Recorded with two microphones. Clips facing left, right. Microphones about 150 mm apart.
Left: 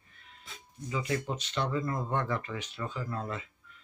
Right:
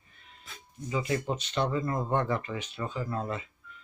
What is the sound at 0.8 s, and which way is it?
Speech, 20° right (ahead or behind).